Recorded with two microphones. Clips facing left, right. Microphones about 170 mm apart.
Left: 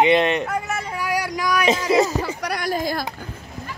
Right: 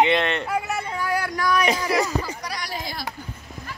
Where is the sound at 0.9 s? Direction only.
15° left (ahead or behind).